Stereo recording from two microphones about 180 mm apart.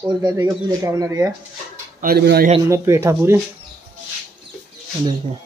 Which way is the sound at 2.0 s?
60° right (ahead or behind).